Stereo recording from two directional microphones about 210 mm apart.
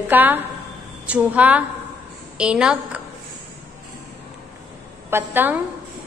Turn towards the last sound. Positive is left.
turn(degrees=-10)  # may be behind; listen again after turning